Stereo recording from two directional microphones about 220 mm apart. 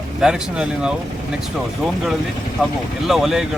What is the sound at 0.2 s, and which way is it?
Speech, 5° right (ahead or behind).